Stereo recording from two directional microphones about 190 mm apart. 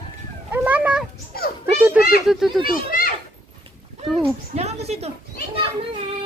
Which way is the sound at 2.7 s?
50° left (ahead or behind).